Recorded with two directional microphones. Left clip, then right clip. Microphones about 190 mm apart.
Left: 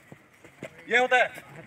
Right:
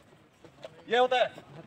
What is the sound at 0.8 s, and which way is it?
Speech, 5° left (ahead or behind).